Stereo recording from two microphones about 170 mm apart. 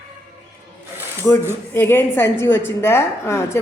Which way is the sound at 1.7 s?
15° left (ahead or behind).